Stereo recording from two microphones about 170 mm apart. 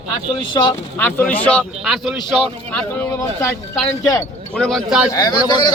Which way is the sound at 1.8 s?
5° right (ahead or behind).